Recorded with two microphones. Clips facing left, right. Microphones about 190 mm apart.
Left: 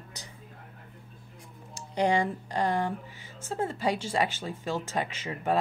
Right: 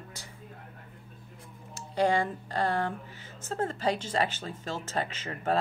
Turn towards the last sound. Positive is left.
turn(degrees=10)  # may be behind; listen again after turning